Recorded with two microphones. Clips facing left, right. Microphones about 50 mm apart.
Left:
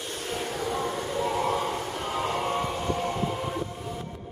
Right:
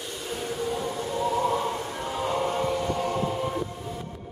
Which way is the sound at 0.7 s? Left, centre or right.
Left.